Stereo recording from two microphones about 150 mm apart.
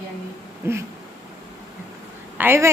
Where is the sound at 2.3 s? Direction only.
15° right (ahead or behind).